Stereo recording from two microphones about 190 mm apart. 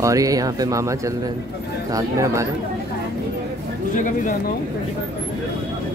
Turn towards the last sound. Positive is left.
turn(degrees=45)  # may be behind; listen again after turning